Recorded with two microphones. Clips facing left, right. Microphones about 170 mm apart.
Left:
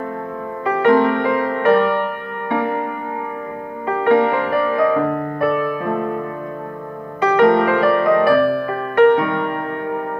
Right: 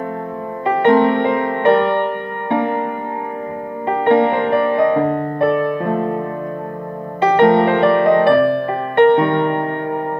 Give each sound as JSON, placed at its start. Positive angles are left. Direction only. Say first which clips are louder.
{"t": 0.7, "sound": "music", "louder": "right 1 dB", "side_deg": -25}
{"t": 3.8, "sound": "music", "louder": "right 1 dB", "side_deg": -25}